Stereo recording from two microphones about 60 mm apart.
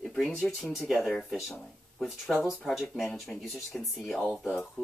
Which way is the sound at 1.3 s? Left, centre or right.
Centre.